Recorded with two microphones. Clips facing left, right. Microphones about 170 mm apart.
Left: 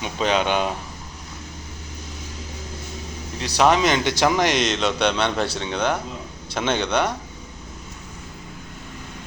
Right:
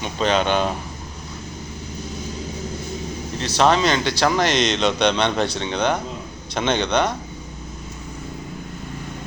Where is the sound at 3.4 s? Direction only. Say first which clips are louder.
Even; 10° left (ahead or behind).